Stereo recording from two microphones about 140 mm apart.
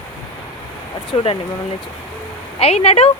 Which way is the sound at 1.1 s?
40° left (ahead or behind).